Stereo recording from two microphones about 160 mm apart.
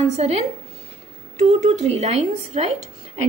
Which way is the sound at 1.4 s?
45° right (ahead or behind).